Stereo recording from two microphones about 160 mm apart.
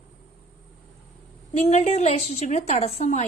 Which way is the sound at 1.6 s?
45° left (ahead or behind).